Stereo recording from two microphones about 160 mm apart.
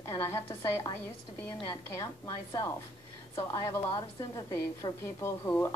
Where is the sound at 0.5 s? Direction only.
20° left (ahead or behind).